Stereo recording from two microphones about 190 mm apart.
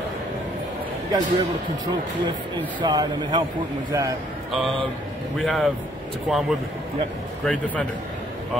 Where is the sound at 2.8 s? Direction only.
20° right (ahead or behind).